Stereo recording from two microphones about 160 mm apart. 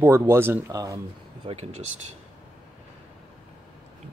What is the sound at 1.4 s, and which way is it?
Speech, 40° right (ahead or behind).